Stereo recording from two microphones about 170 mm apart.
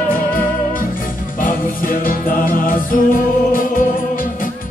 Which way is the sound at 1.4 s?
55° left (ahead or behind).